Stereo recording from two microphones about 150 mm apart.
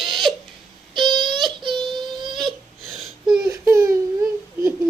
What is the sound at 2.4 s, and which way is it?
Babbling, centre (ahead or behind).